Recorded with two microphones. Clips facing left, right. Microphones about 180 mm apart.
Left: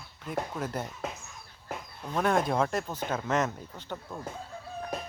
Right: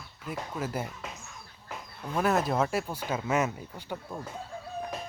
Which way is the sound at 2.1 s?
5° right (ahead or behind).